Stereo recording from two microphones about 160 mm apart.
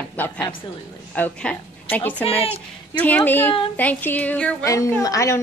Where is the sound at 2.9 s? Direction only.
10° left (ahead or behind).